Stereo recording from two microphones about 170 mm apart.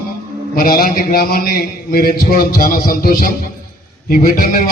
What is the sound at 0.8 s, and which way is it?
A man's voice, 55° left (ahead or behind).